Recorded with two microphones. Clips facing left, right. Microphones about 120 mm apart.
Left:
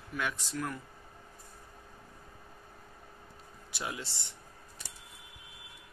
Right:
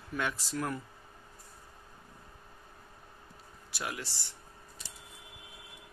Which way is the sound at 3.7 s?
20° left (ahead or behind).